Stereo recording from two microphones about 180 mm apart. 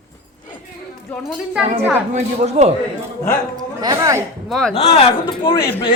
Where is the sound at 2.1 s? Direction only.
40° right (ahead or behind).